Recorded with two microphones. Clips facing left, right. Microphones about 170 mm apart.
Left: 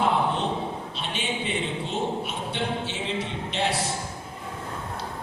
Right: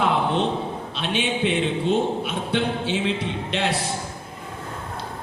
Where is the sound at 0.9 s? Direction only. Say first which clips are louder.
Right 7 dB; 75° right (ahead or behind).